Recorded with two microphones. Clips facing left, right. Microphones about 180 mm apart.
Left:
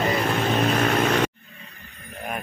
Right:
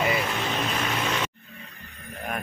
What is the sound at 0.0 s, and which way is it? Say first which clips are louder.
Vehicle: left 4 dB; 50° left (ahead or behind).